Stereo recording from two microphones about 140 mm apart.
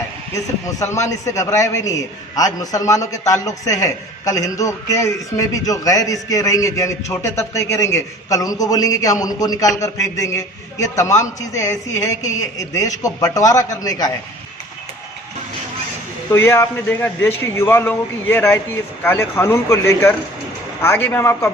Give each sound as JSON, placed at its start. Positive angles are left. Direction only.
{"t": 0.9, "sound": "a man's voice", "side_deg": 20}
{"t": 16.3, "sound": "a man's voice", "side_deg": 15}